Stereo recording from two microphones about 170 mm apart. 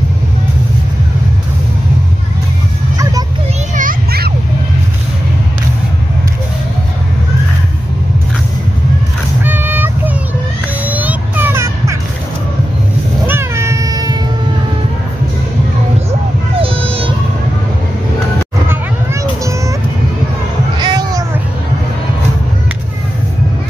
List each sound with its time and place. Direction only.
3.7 s children playing: 60° right (ahead or behind)
9.4 s a sound: 10° right (ahead or behind)
10.9 s vehicle: 10° right (ahead or behind)
13.3 s cat: 15° right (ahead or behind)
16.1 s a sound: 35° right (ahead or behind)
20.8 s cat: 20° right (ahead or behind)